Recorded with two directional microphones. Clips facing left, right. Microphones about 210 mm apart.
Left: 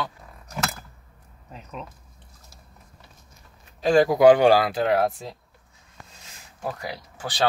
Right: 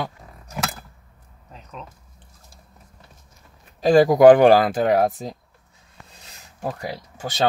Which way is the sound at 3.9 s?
45° right (ahead or behind).